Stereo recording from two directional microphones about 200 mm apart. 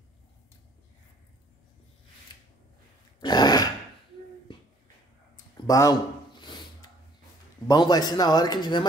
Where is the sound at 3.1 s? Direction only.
20° left (ahead or behind).